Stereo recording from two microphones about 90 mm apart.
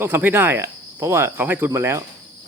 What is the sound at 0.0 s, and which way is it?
Speech, 20° right (ahead or behind).